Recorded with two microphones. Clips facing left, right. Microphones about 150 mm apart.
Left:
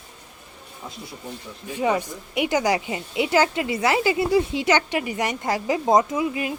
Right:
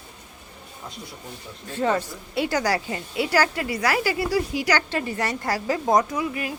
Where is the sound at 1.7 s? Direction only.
15° left (ahead or behind).